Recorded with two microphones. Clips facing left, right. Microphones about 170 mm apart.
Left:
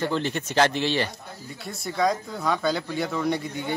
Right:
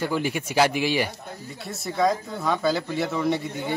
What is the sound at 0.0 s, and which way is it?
Speech, 10° right (ahead or behind).